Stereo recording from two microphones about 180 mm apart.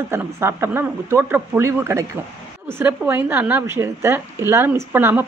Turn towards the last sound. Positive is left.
turn(degrees=-10)  # may be behind; listen again after turning